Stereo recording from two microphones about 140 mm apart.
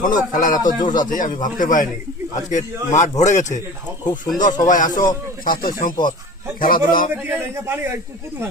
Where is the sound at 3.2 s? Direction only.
60° left (ahead or behind).